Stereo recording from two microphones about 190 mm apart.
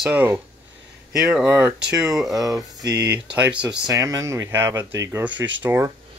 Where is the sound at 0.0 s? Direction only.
10° right (ahead or behind).